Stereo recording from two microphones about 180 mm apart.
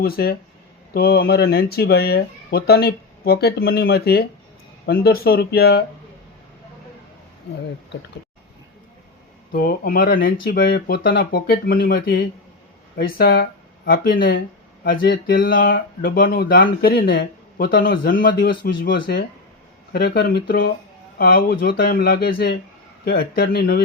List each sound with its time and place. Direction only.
0.0 s speech: 60° left (ahead or behind)
9.5 s speech: 55° left (ahead or behind)